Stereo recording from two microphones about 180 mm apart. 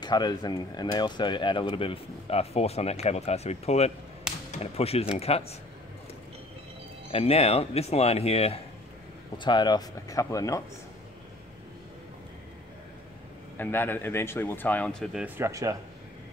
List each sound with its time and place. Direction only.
0.0 s speech: 25° left (ahead or behind)
7.1 s speech: 35° left (ahead or behind); by 10.6 s 20° left (ahead or behind)
13.6 s speech: 10° left (ahead or behind)
15.2 s speech: 15° right (ahead or behind)